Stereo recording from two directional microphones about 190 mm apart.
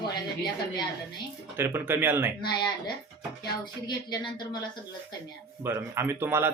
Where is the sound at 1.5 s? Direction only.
10° right (ahead or behind).